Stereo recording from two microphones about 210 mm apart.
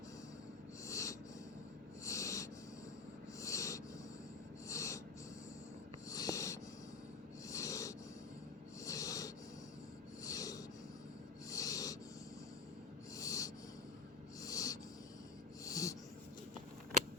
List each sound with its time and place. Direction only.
0.9 s wheeze: 15° left (ahead or behind)
2.0 s snort: 15° left (ahead or behind)
3.4 s a sound: 15° left (ahead or behind)
4.7 s snort: 15° left (ahead or behind)
6.1 s wheeze: 15° left (ahead or behind)
7.4 s snort: 15° left (ahead or behind)
10.2 s a sound: 15° left (ahead or behind)
11.4 s snort: 15° left (ahead or behind)
13.1 s snort: 15° left (ahead or behind)
14.4 s a sound: 15° left (ahead or behind)